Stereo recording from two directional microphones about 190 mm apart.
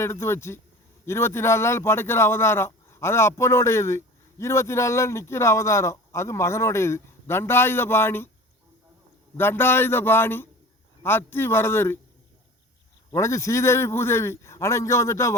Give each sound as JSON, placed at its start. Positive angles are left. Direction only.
{"t": 0.0, "sound": "a man's voice", "side_deg": 15}
{"t": 9.4, "sound": "a man's voice", "side_deg": 10}
{"t": 13.1, "sound": "a man's voice", "side_deg": 15}